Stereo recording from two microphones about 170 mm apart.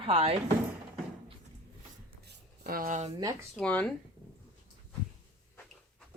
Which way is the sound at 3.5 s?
5° left (ahead or behind).